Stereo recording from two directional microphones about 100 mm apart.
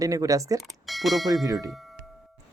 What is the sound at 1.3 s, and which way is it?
Speech, 35° right (ahead or behind).